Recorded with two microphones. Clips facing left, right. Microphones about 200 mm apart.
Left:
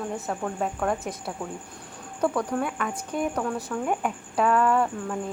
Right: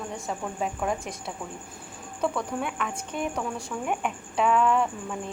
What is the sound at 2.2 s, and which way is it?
Speech, 5° left (ahead or behind).